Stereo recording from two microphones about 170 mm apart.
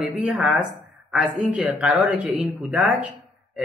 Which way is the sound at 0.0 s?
5° right (ahead or behind).